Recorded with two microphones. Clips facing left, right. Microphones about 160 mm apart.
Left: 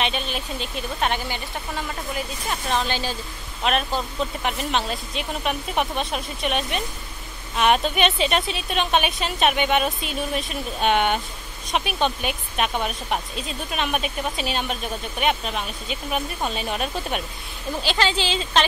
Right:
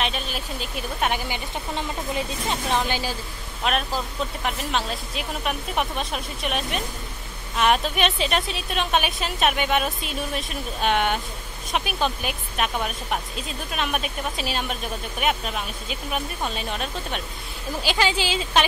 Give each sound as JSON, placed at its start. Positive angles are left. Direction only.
{"t": 0.0, "sound": "speech", "side_deg": 0}
{"t": 1.8, "sound": "speech", "side_deg": -20}
{"t": 17.8, "sound": "speech", "side_deg": -10}